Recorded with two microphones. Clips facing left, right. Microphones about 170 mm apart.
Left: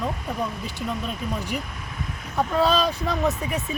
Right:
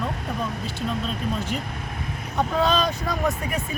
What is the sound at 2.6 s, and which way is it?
Speech, 5° left (ahead or behind).